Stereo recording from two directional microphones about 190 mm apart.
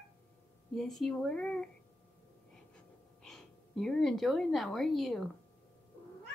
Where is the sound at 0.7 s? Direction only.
Centre (ahead or behind).